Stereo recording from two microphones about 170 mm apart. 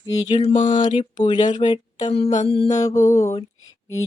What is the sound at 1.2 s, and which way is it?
Music, 25° left (ahead or behind).